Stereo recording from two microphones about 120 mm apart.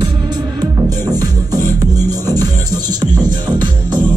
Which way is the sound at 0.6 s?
35° right (ahead or behind).